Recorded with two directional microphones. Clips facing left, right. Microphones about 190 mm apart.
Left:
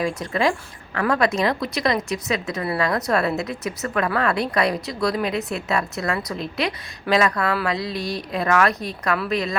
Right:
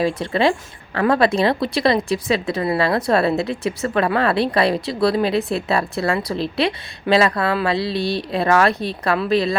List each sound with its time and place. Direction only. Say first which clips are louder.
0.0 s speech: right 4 dB; 30° right (ahead or behind)